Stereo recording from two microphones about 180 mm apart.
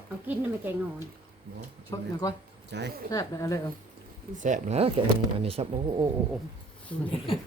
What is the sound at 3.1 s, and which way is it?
Speech, 20° left (ahead or behind).